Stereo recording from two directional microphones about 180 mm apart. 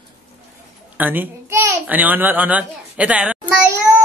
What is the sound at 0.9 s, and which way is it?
A child's voice, 10° right (ahead or behind).